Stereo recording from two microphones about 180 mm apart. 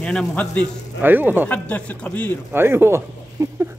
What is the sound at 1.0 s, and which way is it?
Speech, 10° right (ahead or behind).